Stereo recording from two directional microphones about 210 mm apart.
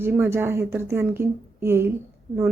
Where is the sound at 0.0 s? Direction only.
10° right (ahead or behind).